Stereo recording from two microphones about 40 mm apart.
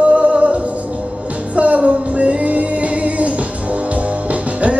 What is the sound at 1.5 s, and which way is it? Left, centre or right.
Music, right.